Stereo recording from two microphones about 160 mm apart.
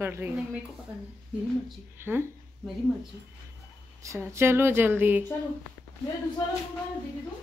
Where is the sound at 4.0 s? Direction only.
20° right (ahead or behind).